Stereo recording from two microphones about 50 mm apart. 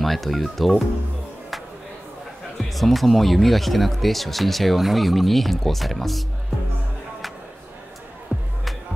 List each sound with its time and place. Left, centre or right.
0.0 s speech: centre
2.7 s speech: centre
8.3 s music: right